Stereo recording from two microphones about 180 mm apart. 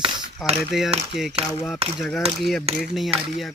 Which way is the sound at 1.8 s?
35° right (ahead or behind).